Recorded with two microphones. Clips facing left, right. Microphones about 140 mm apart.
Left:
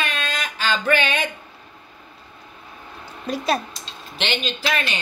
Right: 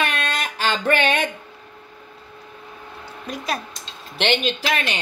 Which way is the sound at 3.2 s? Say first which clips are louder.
Left 5 dB; 30° left (ahead or behind).